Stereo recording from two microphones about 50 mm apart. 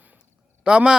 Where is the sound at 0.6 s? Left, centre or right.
Centre.